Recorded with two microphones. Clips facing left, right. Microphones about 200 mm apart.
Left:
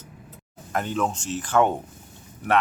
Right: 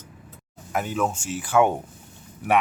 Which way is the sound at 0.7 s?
5° right (ahead or behind).